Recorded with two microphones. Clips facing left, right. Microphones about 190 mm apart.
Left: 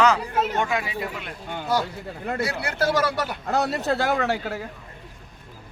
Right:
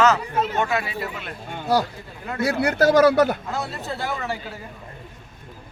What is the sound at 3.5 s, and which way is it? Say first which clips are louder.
Speech: left 6 dB; 75° left (ahead or behind).